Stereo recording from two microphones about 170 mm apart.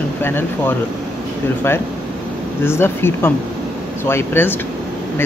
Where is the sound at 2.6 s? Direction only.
15° left (ahead or behind).